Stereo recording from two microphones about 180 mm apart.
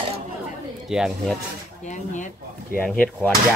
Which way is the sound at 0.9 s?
5° right (ahead or behind).